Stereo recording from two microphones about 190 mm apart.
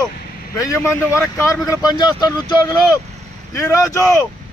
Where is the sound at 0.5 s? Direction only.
15° left (ahead or behind).